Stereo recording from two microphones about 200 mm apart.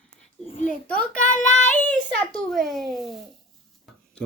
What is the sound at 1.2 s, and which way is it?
Child singing, 40° left (ahead or behind).